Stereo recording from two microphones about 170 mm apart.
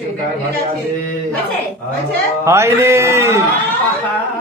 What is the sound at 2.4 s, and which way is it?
Speech, 15° right (ahead or behind).